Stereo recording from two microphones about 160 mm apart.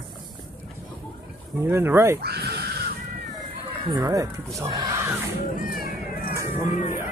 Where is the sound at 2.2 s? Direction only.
90° right.